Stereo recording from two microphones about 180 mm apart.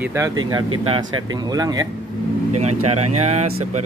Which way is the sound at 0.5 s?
25° right (ahead or behind).